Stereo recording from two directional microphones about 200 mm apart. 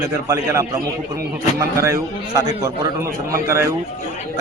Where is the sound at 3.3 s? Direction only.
15° right (ahead or behind).